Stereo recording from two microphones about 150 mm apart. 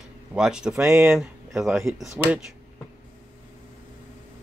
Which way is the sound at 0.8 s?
15° right (ahead or behind).